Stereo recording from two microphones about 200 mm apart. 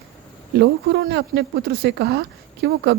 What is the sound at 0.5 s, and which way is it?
Speech, 55° right (ahead or behind).